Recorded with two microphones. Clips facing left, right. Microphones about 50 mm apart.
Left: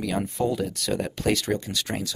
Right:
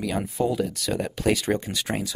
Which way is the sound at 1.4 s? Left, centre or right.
Right.